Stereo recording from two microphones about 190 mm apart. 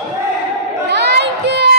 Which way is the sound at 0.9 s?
60° right (ahead or behind).